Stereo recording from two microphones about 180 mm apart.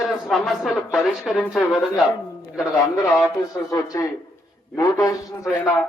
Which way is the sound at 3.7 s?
20° left (ahead or behind).